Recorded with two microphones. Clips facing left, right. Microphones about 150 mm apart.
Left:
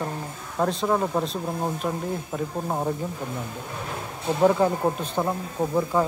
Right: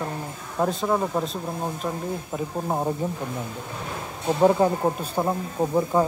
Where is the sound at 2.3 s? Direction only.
10° right (ahead or behind).